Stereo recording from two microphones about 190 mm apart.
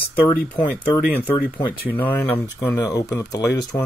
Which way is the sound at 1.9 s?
10° left (ahead or behind).